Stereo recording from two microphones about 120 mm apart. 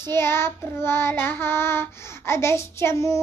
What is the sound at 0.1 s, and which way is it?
Child singing, 20° left (ahead or behind).